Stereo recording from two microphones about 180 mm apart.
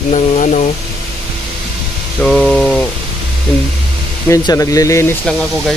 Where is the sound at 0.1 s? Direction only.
40° left (ahead or behind).